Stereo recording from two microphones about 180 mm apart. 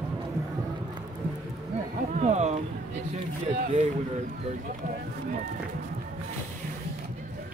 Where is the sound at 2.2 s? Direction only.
40° right (ahead or behind).